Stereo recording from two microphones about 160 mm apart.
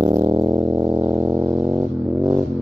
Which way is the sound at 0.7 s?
15° right (ahead or behind).